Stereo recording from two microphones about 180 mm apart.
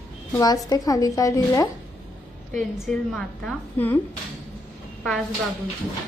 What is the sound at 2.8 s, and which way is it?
A woman's voice, 5° left (ahead or behind).